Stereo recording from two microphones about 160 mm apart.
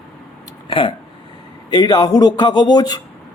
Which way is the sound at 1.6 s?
25° left (ahead or behind).